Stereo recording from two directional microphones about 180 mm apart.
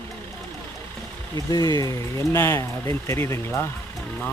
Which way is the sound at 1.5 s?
20° left (ahead or behind).